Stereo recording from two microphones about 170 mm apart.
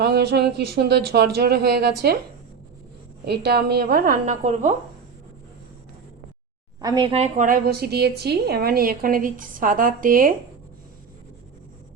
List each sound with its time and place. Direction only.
0.0 s speech: 75° right (ahead or behind)
3.2 s a woman's voice: 70° right (ahead or behind); by 4.7 s 45° right (ahead or behind)
6.8 s speech: 25° right (ahead or behind)
7.2 s a woman's voice: 50° right (ahead or behind)